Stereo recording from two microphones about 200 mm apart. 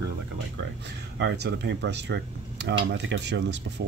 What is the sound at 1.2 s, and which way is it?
Speech, 60° right (ahead or behind).